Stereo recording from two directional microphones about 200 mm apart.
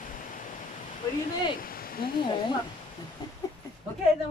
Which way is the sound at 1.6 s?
45° left (ahead or behind).